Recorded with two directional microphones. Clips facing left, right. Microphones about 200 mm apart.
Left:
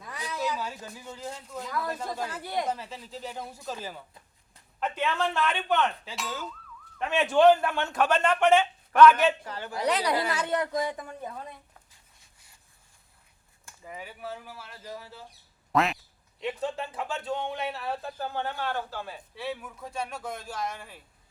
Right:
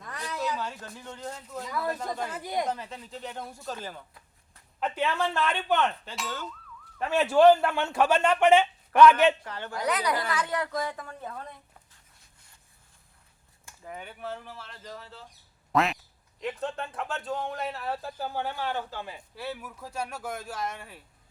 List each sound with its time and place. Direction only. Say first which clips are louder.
0.0 s speech: even; 5° left (ahead or behind)
4.8 s a man's voice: even; 10° right (ahead or behind)
6.1 s a man's voice: even; 5° left (ahead or behind); by 9.3 s 15° right (ahead or behind)
9.4 s a woman's voice: even; 10° left (ahead or behind)
9.8 s a woman's voice: left 2 dB; 30° left (ahead or behind)
13.8 s speech: right 1 dB; 5° left (ahead or behind)
15.7 s quack: even; centre (ahead or behind)
16.4 s speech: left 1 dB; centre (ahead or behind); by 19.2 s 15° right (ahead or behind)
19.4 s speech: left 2 dB; centre (ahead or behind)